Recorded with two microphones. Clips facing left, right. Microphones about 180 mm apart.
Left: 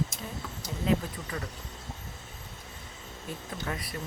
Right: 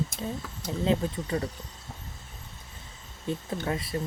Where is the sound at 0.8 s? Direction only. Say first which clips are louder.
Right 2 dB; 30° right (ahead or behind).